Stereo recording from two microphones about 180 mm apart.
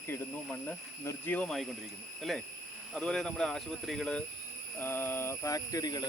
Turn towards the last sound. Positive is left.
turn(degrees=20)  # may be behind; listen again after turning